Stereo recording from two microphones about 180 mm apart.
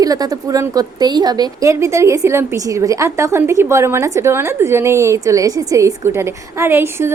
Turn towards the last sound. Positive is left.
turn(degrees=-15)  # may be behind; listen again after turning